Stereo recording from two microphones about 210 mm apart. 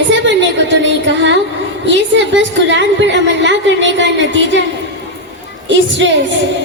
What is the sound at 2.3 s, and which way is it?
A woman's voice, 60° right (ahead or behind).